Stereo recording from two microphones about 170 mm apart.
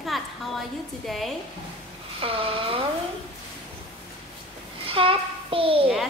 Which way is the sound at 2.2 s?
35° right (ahead or behind).